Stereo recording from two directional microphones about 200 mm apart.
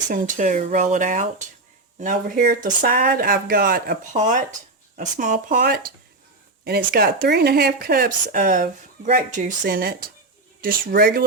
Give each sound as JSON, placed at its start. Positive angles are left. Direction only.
{"t": 0.1, "sound": "speech", "side_deg": -40}